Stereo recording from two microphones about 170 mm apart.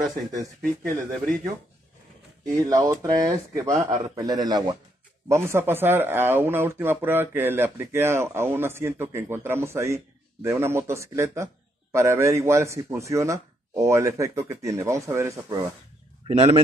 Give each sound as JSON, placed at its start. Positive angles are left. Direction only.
{"t": 0.1, "sound": "speech", "side_deg": -20}
{"t": 2.5, "sound": "speech", "side_deg": -20}
{"t": 16.3, "sound": "a man's voice", "side_deg": -35}